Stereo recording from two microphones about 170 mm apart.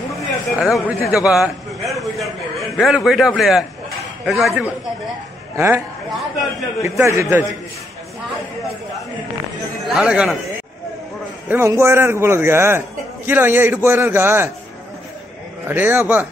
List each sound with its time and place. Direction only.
0.1 s speech: centre (ahead or behind)
6.8 s a man's voice: 15° right (ahead or behind)
9.9 s a man's voice: 5° right (ahead or behind)
15.6 s a man's voice: 10° right (ahead or behind)